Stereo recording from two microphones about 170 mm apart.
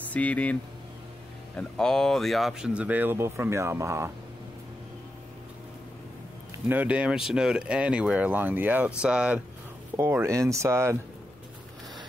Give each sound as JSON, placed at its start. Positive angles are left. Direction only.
{"t": 0.1, "sound": "speech", "side_deg": 10}
{"t": 1.6, "sound": "speech", "side_deg": 5}
{"t": 6.7, "sound": "speech", "side_deg": -10}
{"t": 9.9, "sound": "speech", "side_deg": -15}